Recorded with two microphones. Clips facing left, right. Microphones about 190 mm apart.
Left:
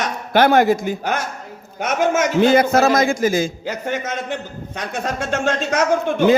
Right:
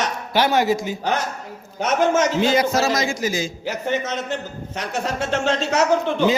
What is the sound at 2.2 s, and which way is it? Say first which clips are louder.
A man's voice: left 4 dB; 55° left (ahead or behind).